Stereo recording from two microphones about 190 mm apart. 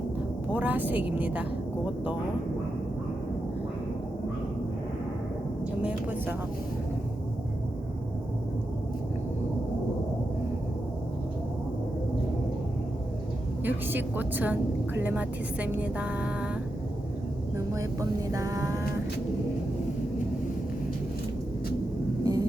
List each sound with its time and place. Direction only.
0.5 s a woman's voice: 10° right (ahead or behind)
5.8 s a woman's voice: 10° right (ahead or behind)
13.7 s a woman's voice: 10° right (ahead or behind)
17.7 s a woman's voice: 15° right (ahead or behind)
22.2 s heart sounds: 20° right (ahead or behind)